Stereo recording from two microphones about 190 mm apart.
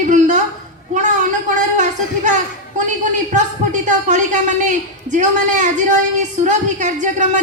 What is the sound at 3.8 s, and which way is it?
A woman's voice, 40° right (ahead or behind).